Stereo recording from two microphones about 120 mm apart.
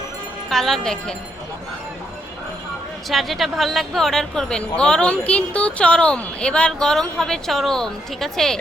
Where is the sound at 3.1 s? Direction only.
Centre (ahead or behind).